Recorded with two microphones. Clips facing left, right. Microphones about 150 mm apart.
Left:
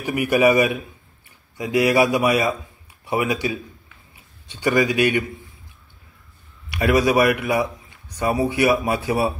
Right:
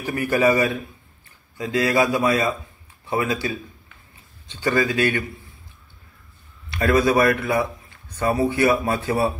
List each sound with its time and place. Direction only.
0.0 s a man's voice: 15° left (ahead or behind)
6.7 s a man's voice: 15° left (ahead or behind)